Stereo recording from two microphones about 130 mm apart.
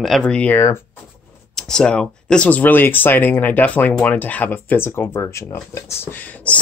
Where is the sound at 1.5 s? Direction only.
5° left (ahead or behind).